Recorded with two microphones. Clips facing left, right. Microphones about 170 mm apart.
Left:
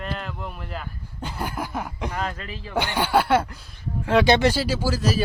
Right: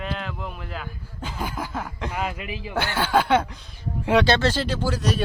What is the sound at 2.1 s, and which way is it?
Speech, 10° right (ahead or behind).